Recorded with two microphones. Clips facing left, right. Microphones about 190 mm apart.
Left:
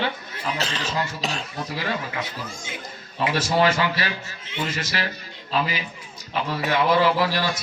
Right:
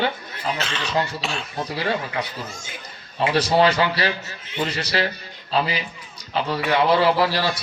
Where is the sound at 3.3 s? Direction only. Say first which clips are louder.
Right 3 dB; 35° right (ahead or behind).